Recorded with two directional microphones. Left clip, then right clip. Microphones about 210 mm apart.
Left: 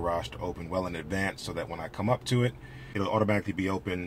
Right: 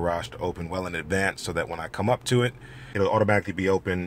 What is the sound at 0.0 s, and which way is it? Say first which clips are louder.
Speech: right 4 dB; 45° right (ahead or behind).